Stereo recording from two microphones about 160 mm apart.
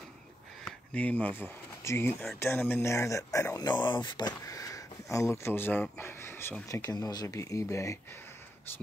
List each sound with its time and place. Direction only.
0.9 s speech: 10° left (ahead or behind)